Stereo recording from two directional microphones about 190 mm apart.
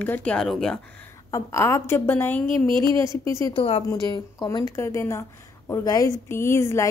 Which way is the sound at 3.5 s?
30° left (ahead or behind).